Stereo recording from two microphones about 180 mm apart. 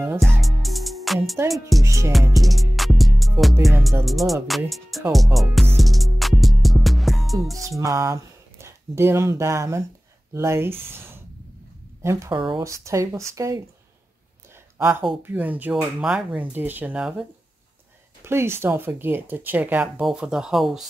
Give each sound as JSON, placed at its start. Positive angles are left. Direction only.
{"t": 0.2, "sound": "music", "side_deg": 0}
{"t": 1.8, "sound": "speech", "side_deg": -15}
{"t": 2.3, "sound": "music", "side_deg": 0}
{"t": 3.6, "sound": "speech", "side_deg": 0}
{"t": 5.8, "sound": "music", "side_deg": 0}
{"t": 7.8, "sound": "speech", "side_deg": -20}
{"t": 14.8, "sound": "speech", "side_deg": -15}